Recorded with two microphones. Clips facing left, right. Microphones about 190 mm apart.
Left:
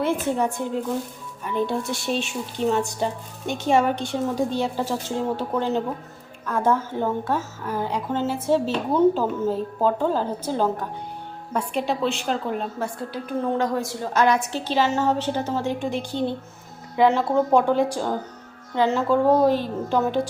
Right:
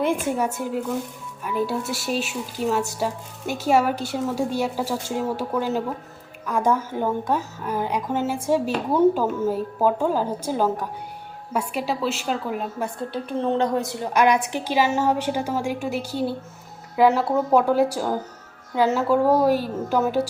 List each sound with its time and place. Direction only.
0.0 s a woman's voice: 10° right (ahead or behind)
13.4 s a woman's voice: 20° right (ahead or behind)